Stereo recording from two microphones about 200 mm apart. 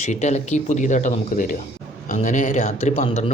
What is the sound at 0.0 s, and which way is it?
A man's voice, 35° left (ahead or behind).